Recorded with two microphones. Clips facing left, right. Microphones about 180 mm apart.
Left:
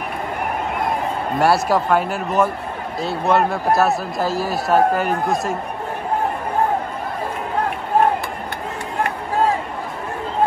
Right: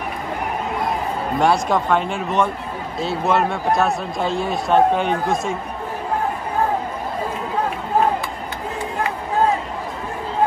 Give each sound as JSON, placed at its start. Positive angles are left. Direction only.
{"t": 1.4, "sound": "speech", "side_deg": 5}